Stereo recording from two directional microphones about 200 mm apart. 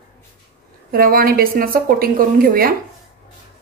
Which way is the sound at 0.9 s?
45° right (ahead or behind).